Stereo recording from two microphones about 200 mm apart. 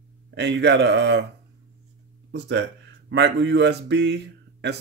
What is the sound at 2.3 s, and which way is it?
Speech, 60° right (ahead or behind).